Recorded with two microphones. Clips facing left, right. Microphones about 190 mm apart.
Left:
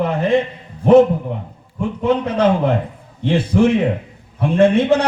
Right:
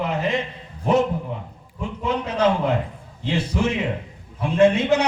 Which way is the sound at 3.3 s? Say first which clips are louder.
Left 8 dB; 55° left (ahead or behind).